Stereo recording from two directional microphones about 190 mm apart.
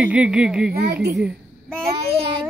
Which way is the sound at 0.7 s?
55° right (ahead or behind).